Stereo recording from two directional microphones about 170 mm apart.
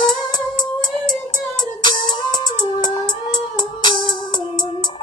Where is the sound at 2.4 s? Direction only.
25° left (ahead or behind).